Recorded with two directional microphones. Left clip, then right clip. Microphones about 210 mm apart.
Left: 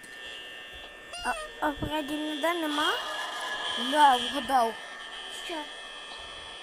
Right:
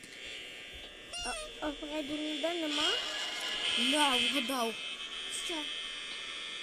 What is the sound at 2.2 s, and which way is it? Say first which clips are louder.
Speech: left 5 dB; 30° right (ahead or behind).